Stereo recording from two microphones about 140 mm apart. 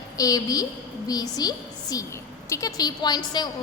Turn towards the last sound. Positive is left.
turn(degrees=30)  # may be behind; listen again after turning